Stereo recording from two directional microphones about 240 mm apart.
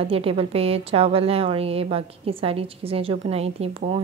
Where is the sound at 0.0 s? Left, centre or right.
Right.